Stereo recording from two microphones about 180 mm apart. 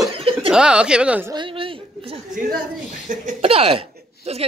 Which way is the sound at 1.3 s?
30° right (ahead or behind).